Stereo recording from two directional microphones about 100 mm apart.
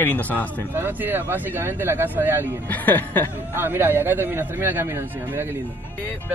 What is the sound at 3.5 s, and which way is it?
A man's voice, 20° right (ahead or behind).